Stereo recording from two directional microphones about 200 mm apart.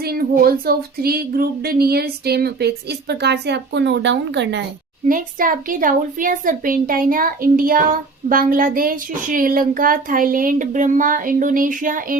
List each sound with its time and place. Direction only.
0.0 s a woman's voice: 50° right (ahead or behind)
5.0 s a woman's voice: 45° right (ahead or behind)